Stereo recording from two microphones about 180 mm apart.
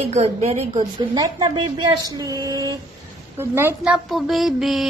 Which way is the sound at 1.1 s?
20° right (ahead or behind).